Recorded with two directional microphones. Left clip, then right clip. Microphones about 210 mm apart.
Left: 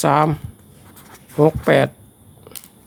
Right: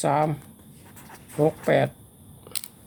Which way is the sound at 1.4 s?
30° left (ahead or behind).